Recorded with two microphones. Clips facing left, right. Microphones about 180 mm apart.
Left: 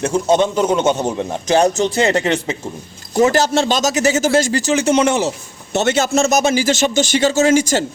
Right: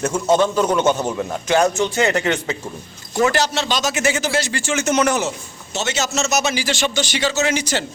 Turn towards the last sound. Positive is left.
turn(degrees=45)  # may be behind; listen again after turning